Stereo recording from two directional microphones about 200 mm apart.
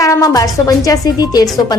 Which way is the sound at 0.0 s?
15° left (ahead or behind).